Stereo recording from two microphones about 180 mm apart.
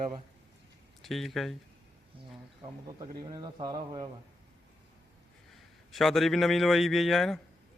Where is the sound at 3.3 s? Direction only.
25° right (ahead or behind).